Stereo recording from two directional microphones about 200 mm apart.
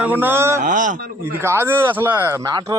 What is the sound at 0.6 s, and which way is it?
Speech, 40° right (ahead or behind).